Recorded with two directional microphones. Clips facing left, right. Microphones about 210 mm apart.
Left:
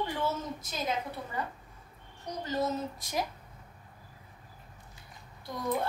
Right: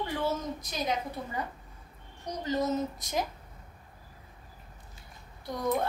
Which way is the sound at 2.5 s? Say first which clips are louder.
Right 3 dB; 20° right (ahead or behind).